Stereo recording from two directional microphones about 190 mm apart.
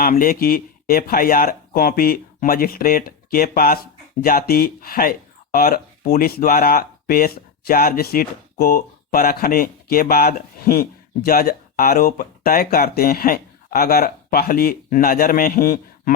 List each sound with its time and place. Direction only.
0.0 s speech: 50° left (ahead or behind)